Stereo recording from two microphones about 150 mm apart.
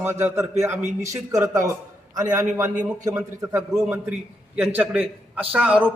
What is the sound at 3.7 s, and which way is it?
A man's voice, 10° right (ahead or behind).